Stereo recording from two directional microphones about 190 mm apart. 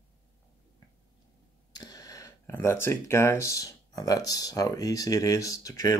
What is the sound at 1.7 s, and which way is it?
Speech, 20° left (ahead or behind).